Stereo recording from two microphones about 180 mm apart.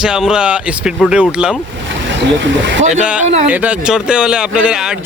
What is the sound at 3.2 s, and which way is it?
Speech, 40° right (ahead or behind).